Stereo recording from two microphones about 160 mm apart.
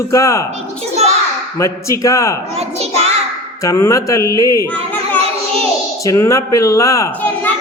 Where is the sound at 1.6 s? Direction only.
20° left (ahead or behind).